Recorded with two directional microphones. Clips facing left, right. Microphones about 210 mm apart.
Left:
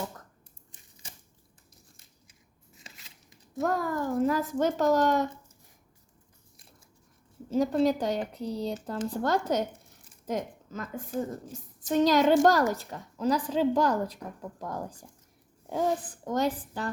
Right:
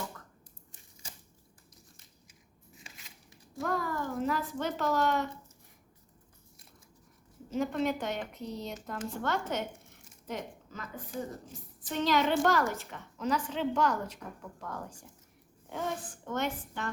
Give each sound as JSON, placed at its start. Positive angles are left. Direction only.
{"t": 3.6, "sound": "a child's voice", "side_deg": 45}
{"t": 7.5, "sound": "a woman's voice", "side_deg": 35}
{"t": 16.2, "sound": "a woman's voice", "side_deg": 35}